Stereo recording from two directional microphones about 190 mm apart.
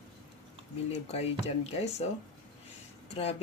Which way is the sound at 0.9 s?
35° left (ahead or behind).